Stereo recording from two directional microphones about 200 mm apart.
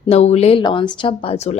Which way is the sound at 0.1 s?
30° left (ahead or behind).